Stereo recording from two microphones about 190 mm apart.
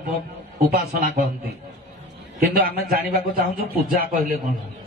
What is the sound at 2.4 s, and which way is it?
A man's voice, 55° right (ahead or behind).